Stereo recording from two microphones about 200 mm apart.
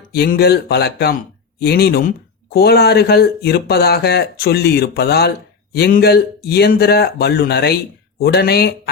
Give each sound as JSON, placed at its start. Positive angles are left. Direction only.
{"t": 0.1, "sound": "speech", "side_deg": 50}